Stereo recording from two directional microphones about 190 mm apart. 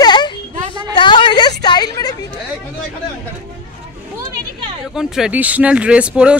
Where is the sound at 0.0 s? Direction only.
20° left (ahead or behind).